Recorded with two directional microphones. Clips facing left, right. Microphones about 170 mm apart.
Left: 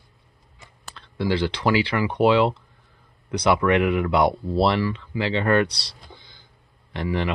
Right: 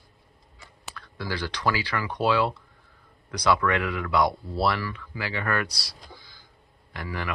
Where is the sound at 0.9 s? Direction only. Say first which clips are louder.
Left 9 dB; 25° left (ahead or behind).